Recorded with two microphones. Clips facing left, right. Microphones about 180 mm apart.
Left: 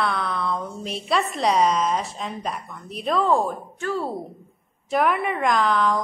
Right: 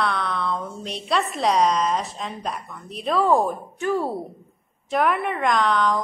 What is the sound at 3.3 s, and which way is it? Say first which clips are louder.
Speech: right 2 dB; 15° right (ahead or behind).